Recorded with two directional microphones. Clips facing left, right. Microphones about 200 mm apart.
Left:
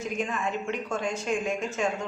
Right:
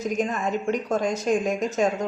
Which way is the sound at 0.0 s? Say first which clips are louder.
Right 5 dB; 40° right (ahead or behind).